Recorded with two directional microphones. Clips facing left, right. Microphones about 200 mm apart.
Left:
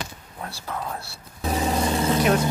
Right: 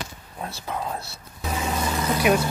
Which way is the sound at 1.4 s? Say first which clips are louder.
Left 4 dB; 35° left (ahead or behind).